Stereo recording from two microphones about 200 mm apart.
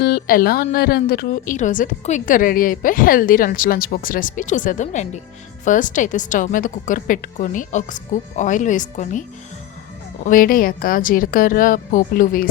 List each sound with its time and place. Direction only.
0.0 s a woman's voice: 50° left (ahead or behind)
10.2 s a woman's voice: 45° left (ahead or behind)